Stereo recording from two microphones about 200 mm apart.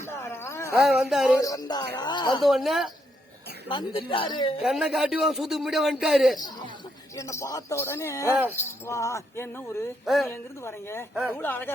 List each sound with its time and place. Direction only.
0.1 s a sound: 15° left (ahead or behind)
0.8 s speech: centre (ahead or behind)
1.4 s speech: 15° left (ahead or behind)
2.4 s speech: centre (ahead or behind)
3.7 s speech: 25° left (ahead or behind)
4.6 s speech: 5° right (ahead or behind)
7.2 s speech: 15° left (ahead or behind)